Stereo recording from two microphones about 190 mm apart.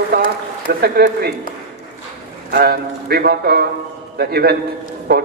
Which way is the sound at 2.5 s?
55° right (ahead or behind).